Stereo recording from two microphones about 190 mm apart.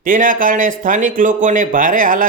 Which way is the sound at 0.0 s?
45° right (ahead or behind).